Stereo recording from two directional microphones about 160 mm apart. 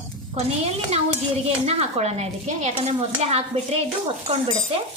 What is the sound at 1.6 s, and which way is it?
Speech, 40° right (ahead or behind).